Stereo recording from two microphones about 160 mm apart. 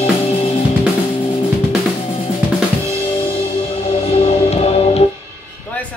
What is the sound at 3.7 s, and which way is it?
Music, 40° left (ahead or behind).